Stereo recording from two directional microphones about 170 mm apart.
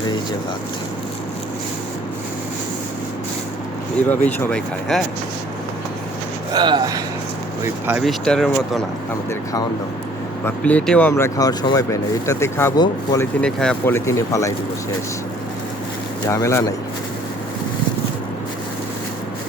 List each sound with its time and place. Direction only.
4.3 s speech: 10° left (ahead or behind)
6.5 s speech: 25° right (ahead or behind)
7.6 s speech: 10° right (ahead or behind)
8.0 s speech: centre (ahead or behind)
10.4 s speech: 10° left (ahead or behind)
11.1 s speech: 20° left (ahead or behind)
13.4 s speech: 5° left (ahead or behind)
13.9 s speech: 15° left (ahead or behind)
16.2 s speech: 20° left (ahead or behind)